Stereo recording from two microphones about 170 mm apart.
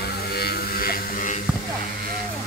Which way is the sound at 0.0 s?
70° left (ahead or behind).